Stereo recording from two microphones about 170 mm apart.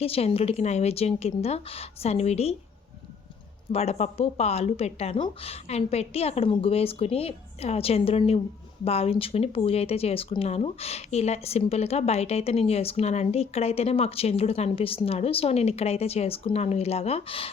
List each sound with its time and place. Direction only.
0.0 s speech: 35° left (ahead or behind)
3.7 s speech: 40° left (ahead or behind)